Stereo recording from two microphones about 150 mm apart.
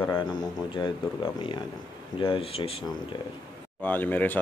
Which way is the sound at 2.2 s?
35° left (ahead or behind).